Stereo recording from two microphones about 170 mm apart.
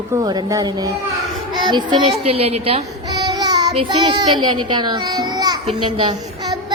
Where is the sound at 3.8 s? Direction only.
25° right (ahead or behind).